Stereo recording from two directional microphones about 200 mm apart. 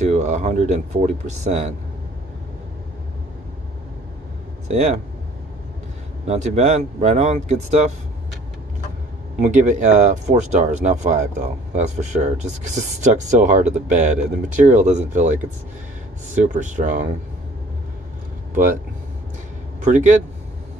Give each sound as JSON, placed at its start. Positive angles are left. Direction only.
{"t": 0.0, "sound": "speech", "side_deg": -35}
{"t": 4.6, "sound": "speech", "side_deg": -35}
{"t": 6.2, "sound": "speech", "side_deg": -35}
{"t": 9.4, "sound": "speech", "side_deg": -40}
{"t": 16.4, "sound": "speech", "side_deg": -40}
{"t": 18.5, "sound": "speech", "side_deg": -45}
{"t": 19.8, "sound": "speech", "side_deg": -40}